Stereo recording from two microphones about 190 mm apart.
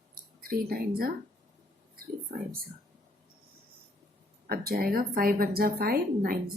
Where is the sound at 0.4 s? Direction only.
50° right (ahead or behind).